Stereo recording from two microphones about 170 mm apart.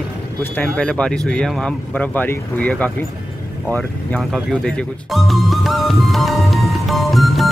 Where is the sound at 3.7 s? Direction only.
5° left (ahead or behind).